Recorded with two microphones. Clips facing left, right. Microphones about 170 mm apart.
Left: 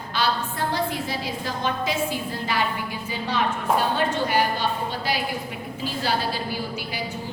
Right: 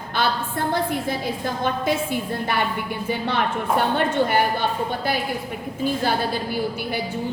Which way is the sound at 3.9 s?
55° right (ahead or behind).